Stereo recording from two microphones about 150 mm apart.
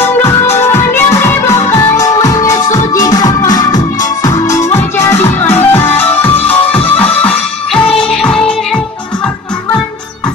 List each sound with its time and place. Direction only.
0.0 s music: 15° left (ahead or behind)